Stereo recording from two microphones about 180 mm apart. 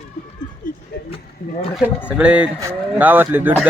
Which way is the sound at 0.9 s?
70° left (ahead or behind).